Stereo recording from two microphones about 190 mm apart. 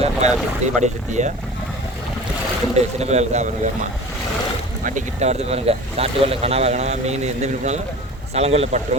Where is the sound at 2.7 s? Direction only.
35° right (ahead or behind).